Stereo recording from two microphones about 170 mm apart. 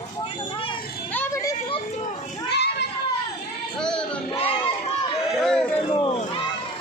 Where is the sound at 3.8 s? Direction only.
5° left (ahead or behind).